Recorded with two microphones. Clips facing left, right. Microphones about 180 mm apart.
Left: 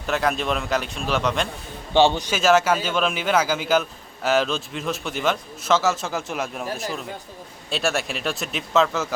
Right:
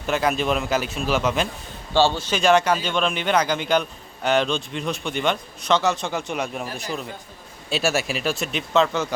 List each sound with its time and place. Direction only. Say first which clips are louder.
0.0 s a man's voice: right 1 dB; centre (ahead or behind)
1.9 s speech: left 2 dB; 20° left (ahead or behind)
2.3 s a man's voice: even; 5° left (ahead or behind)